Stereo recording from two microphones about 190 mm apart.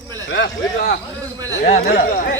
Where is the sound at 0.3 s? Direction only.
65° left (ahead or behind).